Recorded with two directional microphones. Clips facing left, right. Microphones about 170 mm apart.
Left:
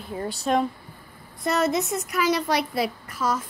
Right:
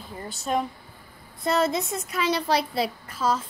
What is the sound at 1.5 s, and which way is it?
A child's voice, 30° right (ahead or behind).